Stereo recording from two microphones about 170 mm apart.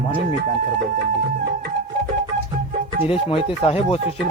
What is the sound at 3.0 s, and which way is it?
Speech, 35° left (ahead or behind).